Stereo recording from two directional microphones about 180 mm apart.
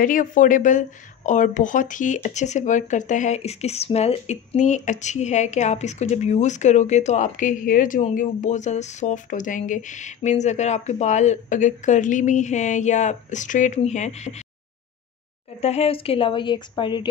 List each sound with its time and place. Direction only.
0.0 s speech: 50° left (ahead or behind)
15.6 s a woman's voice: 35° left (ahead or behind)